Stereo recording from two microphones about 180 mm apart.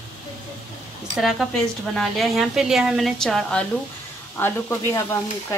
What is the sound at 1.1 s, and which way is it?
Speech, centre (ahead or behind).